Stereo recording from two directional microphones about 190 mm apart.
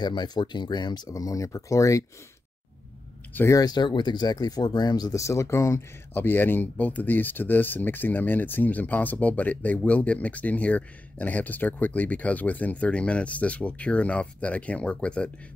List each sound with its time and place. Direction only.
0.0 s speech: 20° left (ahead or behind)
3.3 s speech: 15° left (ahead or behind)